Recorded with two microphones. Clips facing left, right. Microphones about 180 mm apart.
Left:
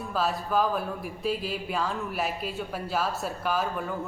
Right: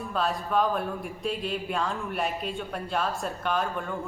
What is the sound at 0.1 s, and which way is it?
Speech, 5° left (ahead or behind).